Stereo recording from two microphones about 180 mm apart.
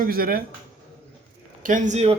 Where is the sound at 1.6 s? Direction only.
45° right (ahead or behind).